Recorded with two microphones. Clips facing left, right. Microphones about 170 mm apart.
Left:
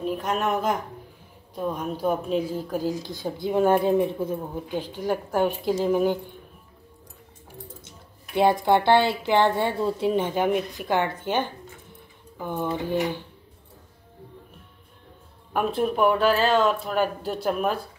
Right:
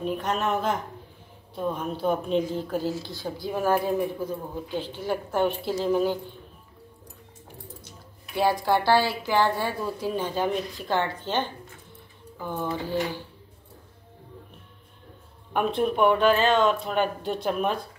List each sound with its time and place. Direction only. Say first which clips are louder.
0.0 s a woman's voice: left 1 dB; 5° left (ahead or behind)
8.6 s a woman's voice: left 3 dB; 20° left (ahead or behind)
15.5 s speech: even; 5° left (ahead or behind)